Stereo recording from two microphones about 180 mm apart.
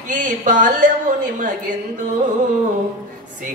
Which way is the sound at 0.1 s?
45° right (ahead or behind).